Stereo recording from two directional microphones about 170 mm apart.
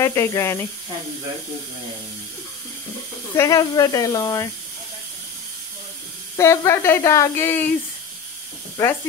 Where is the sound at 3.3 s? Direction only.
20° left (ahead or behind).